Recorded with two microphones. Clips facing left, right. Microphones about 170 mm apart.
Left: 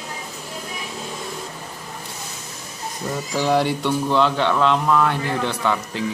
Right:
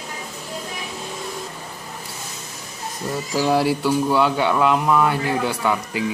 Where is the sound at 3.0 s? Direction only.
5° right (ahead or behind).